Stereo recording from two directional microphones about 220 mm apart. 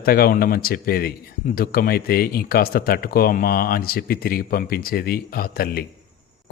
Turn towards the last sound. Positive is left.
turn(degrees=45)  # may be behind; listen again after turning